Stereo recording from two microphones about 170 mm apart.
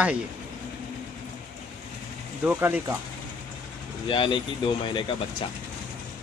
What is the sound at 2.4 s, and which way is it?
Speech, 10° right (ahead or behind).